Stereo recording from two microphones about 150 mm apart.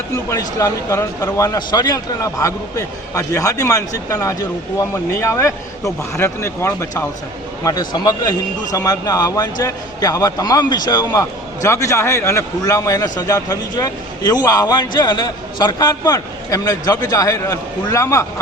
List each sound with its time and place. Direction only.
0.3 s a man's voice: 20° left (ahead or behind)